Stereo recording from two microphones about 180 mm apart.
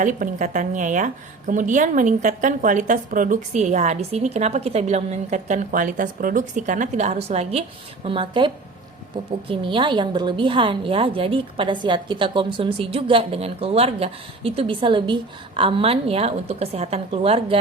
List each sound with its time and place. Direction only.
0.0 s a woman's voice: 45° right (ahead or behind)